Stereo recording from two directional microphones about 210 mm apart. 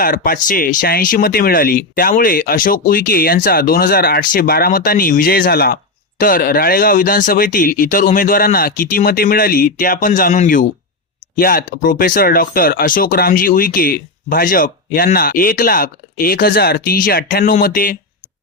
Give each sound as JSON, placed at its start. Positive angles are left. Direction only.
{"t": 0.0, "sound": "speech", "side_deg": 45}